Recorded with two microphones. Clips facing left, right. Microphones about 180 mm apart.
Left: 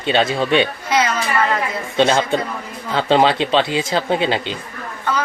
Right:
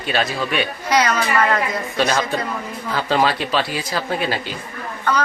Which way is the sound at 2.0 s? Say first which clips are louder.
Left 5 dB; 25° left (ahead or behind).